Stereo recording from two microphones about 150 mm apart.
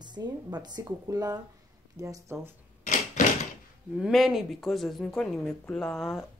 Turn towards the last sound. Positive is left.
turn(degrees=0)  # may be behind; listen again after turning